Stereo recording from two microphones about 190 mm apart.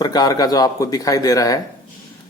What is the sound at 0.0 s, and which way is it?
Speech, 20° left (ahead or behind).